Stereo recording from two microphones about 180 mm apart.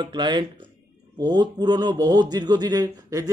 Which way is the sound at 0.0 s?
25° right (ahead or behind).